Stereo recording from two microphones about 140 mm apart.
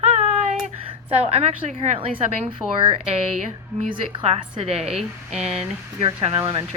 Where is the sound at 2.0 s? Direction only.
45° right (ahead or behind).